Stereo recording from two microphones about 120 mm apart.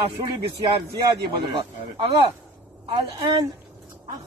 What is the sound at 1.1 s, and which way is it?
A man's voice, 45° right (ahead or behind).